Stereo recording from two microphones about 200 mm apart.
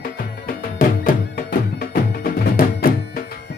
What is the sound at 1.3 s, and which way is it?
Music, 50° left (ahead or behind).